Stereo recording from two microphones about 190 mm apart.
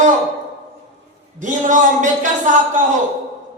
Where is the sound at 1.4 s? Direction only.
40° right (ahead or behind).